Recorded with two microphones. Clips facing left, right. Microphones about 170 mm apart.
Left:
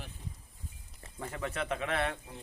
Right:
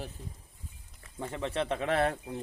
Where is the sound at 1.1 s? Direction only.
25° right (ahead or behind).